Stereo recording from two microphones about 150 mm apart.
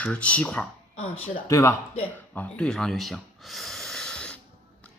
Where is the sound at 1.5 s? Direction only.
20° left (ahead or behind).